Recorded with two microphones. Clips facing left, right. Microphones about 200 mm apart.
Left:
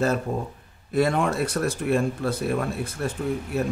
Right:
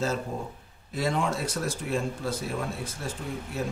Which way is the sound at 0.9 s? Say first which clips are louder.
Left 6 dB; 60° left (ahead or behind).